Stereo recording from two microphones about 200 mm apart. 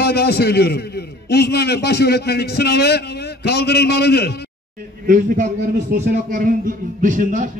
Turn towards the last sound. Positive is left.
turn(degrees=-40)  # may be behind; listen again after turning